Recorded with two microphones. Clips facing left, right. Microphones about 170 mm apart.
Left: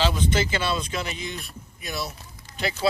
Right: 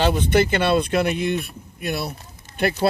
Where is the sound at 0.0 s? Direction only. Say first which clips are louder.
Right 6 dB; 55° right (ahead or behind).